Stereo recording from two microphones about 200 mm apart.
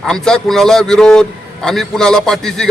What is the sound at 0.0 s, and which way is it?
A man's voice, 5° left (ahead or behind).